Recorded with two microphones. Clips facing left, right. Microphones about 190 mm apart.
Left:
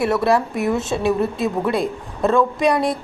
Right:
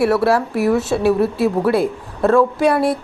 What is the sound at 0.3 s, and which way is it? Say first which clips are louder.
A woman's voice: right 2 dB; 5° right (ahead or behind).